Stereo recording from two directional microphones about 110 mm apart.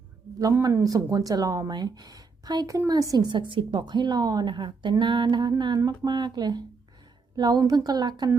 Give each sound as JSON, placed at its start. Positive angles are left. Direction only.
{"t": 0.6, "sound": "speech", "side_deg": -30}